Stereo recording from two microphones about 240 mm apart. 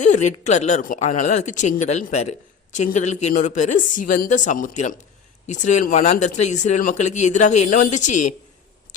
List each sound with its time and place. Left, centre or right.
0.0 s speech: left